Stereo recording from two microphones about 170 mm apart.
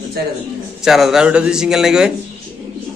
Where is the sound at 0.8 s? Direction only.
Centre (ahead or behind).